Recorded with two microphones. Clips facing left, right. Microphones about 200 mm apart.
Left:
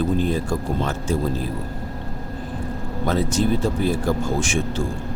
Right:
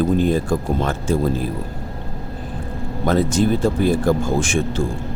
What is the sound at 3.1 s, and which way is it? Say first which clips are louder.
Speech: right 4 dB; 50° right (ahead or behind).